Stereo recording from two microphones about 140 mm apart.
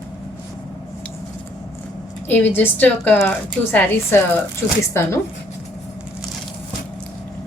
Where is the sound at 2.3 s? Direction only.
15° left (ahead or behind).